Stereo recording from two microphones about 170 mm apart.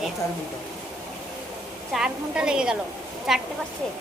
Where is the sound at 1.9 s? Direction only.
5° right (ahead or behind).